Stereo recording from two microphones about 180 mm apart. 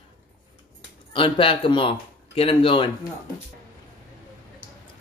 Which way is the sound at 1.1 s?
30° left (ahead or behind).